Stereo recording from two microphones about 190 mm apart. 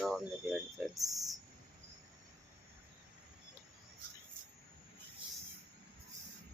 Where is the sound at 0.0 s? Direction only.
Centre (ahead or behind).